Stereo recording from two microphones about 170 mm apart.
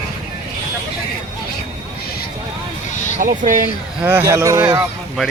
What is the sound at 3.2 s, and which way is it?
Speech, 50° right (ahead or behind).